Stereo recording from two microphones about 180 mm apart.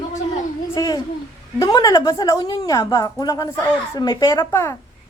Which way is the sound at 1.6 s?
20° left (ahead or behind).